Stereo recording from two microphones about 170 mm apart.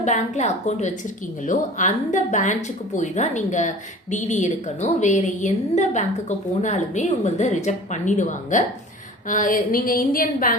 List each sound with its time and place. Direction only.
0.0 s a woman's voice: 45° left (ahead or behind)